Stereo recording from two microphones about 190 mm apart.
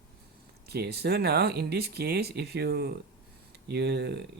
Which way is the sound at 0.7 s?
55° right (ahead or behind).